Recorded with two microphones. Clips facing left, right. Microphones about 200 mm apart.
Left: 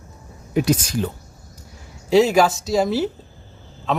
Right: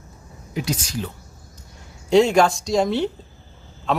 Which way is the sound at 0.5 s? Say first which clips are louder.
Left 7 dB; 55° left (ahead or behind).